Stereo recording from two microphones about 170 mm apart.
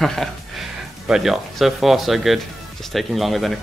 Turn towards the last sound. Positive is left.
turn(degrees=0)  # may be behind; listen again after turning